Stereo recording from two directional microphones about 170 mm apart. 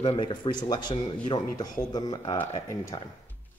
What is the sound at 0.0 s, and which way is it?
Speech, 30° left (ahead or behind).